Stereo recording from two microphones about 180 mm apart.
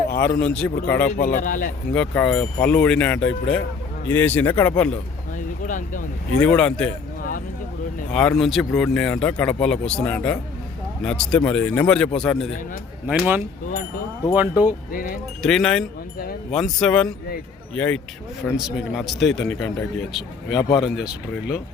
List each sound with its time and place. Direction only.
0.1 s a man's voice: 60° left (ahead or behind)
0.6 s speech: 10° left (ahead or behind)
1.1 s a man's voice: 50° left (ahead or behind)
1.9 s speech: 5° left (ahead or behind)
5.6 s a man's voice: 45° left (ahead or behind)
6.4 s speech: 5° left (ahead or behind)
7.2 s a sound: 50° left (ahead or behind)
8.1 s speech: 5° left (ahead or behind)
13.1 s speech: 5° right (ahead or behind)
14.9 s a man's voice: 50° left (ahead or behind)
15.4 s speech: centre (ahead or behind)
20.6 s speech: 20° left (ahead or behind)
20.8 s speech: 5° right (ahead or behind)